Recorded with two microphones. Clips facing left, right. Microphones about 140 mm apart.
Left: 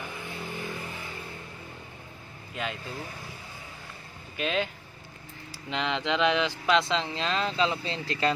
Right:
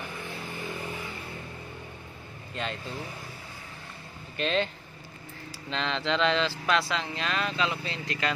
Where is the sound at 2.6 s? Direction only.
5° left (ahead or behind).